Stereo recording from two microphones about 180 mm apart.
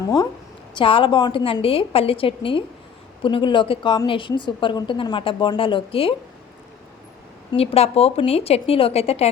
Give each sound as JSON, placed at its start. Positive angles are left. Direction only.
{"t": 0.8, "sound": "a woman's voice", "side_deg": 30}
{"t": 7.5, "sound": "speech", "side_deg": 35}